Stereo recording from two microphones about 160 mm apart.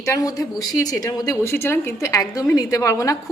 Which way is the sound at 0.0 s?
20° left (ahead or behind).